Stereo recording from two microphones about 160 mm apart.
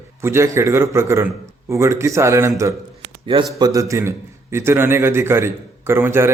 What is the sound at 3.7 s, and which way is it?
A man's voice, 20° right (ahead or behind).